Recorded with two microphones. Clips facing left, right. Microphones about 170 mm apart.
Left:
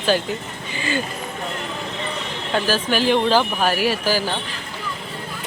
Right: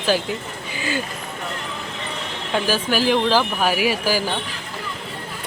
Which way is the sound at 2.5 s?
10° right (ahead or behind).